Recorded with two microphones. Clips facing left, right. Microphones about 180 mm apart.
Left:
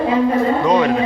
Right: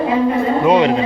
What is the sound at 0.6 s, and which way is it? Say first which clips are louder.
Speech: right 5 dB; 20° right (ahead or behind).